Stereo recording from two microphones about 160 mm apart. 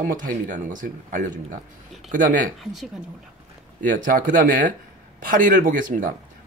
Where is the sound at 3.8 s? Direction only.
55° right (ahead or behind).